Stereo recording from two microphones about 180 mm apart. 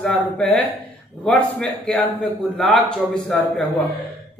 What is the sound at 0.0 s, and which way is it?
A woman's voice, 5° left (ahead or behind).